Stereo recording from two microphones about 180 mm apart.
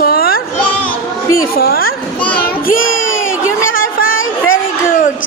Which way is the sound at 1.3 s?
55° left (ahead or behind).